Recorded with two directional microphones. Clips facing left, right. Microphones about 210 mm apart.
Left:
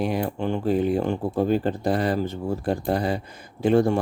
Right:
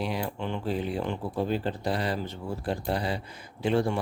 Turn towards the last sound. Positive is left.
turn(degrees=45)  # may be behind; listen again after turning